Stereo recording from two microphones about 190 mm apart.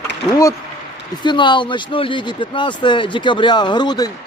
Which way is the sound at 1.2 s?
25° left (ahead or behind).